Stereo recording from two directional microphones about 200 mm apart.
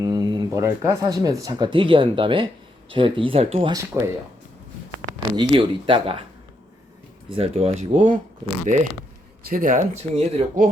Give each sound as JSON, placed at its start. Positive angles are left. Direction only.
{"t": 0.0, "sound": "speech", "side_deg": -20}
{"t": 3.8, "sound": "speech", "side_deg": -15}
{"t": 5.4, "sound": "speech", "side_deg": -25}
{"t": 7.3, "sound": "speech", "side_deg": -30}
{"t": 8.7, "sound": "speech", "side_deg": -40}